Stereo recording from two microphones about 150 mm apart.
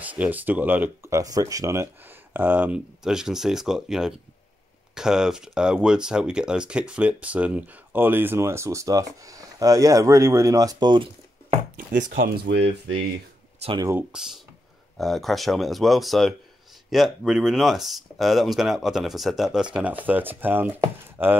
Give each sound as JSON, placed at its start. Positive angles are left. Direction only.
{"t": 0.0, "sound": "speech", "side_deg": -10}
{"t": 11.7, "sound": "chopping", "side_deg": -65}
{"t": 13.7, "sound": "speech", "side_deg": -20}
{"t": 14.1, "sound": "speech", "side_deg": -5}